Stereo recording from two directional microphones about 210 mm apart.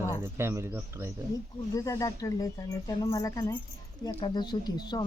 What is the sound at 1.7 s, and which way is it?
Speech, 15° left (ahead or behind).